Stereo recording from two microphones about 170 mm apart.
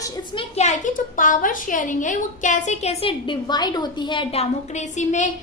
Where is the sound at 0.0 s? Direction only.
30° left (ahead or behind).